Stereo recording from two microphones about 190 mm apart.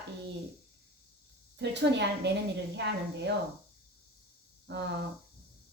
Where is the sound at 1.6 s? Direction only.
65° right (ahead or behind).